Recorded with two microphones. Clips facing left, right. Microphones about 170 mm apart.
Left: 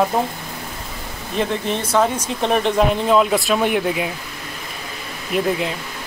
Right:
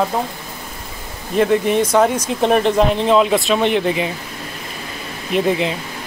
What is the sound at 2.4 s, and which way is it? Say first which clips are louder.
Speech: right 3 dB; centre (ahead or behind).